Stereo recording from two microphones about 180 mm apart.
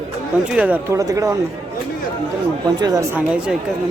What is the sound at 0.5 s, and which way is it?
Speech, 10° right (ahead or behind).